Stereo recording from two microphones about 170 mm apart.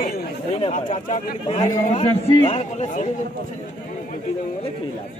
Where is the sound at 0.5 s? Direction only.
40° left (ahead or behind).